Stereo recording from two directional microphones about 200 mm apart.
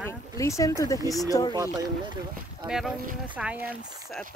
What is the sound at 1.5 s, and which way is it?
Speech, 20° right (ahead or behind).